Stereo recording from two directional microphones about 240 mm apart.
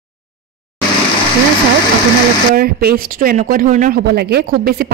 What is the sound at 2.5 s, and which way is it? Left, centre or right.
Speech, right.